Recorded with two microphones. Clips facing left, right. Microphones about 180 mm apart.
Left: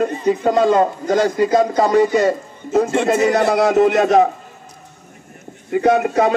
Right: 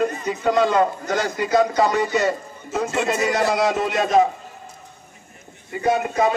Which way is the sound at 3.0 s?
55° left (ahead or behind).